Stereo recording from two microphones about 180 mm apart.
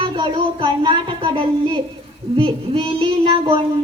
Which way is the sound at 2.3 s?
30° right (ahead or behind).